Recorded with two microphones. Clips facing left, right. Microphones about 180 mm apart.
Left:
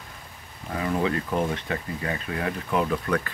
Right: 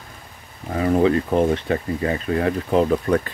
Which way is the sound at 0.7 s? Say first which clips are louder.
Right 8 dB; 35° right (ahead or behind).